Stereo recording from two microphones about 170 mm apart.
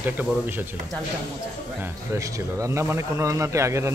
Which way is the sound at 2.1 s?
20° right (ahead or behind).